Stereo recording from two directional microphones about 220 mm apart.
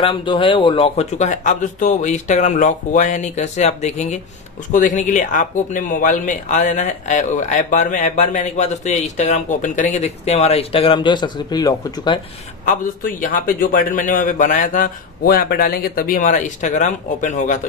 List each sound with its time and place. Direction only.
0.0 s speech: 25° left (ahead or behind)
12.6 s speech: 40° left (ahead or behind)